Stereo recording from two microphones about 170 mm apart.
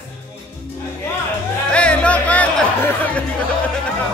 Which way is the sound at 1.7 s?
5° left (ahead or behind).